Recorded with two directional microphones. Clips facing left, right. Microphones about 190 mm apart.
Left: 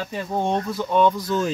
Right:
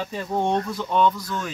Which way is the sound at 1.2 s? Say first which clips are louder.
Left 7 dB; 25° left (ahead or behind).